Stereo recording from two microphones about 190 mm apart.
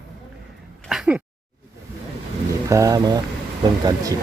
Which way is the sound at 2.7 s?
20° right (ahead or behind).